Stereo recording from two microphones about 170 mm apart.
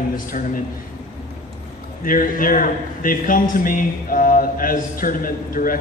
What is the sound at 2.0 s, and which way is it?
A man's voice, 55° left (ahead or behind).